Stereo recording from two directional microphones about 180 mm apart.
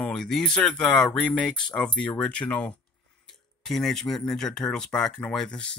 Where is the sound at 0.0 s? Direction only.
Centre (ahead or behind).